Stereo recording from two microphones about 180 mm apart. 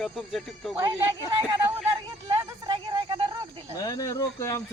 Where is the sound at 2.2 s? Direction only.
20° right (ahead or behind).